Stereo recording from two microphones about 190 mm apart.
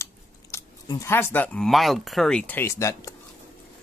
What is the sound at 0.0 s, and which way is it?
Speech, 15° left (ahead or behind).